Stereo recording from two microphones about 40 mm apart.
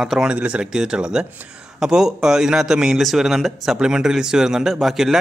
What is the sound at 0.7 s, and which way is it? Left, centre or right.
Speech, centre.